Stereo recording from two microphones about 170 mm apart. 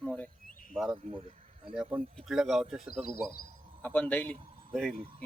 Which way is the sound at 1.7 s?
5° right (ahead or behind).